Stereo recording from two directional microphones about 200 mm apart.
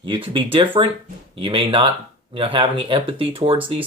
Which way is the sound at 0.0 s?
25° right (ahead or behind).